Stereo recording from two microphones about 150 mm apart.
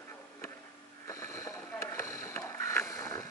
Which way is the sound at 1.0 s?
20° left (ahead or behind).